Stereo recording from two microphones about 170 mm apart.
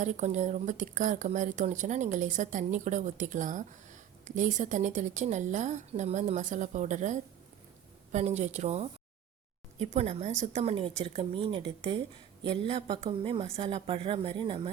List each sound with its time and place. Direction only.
0.0 s a woman's voice: 45° right (ahead or behind)